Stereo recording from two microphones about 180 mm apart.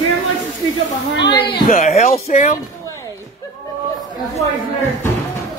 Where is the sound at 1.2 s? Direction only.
25° left (ahead or behind).